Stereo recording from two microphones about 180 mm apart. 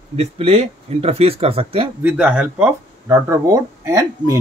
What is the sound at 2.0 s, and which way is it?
Speech, 10° right (ahead or behind).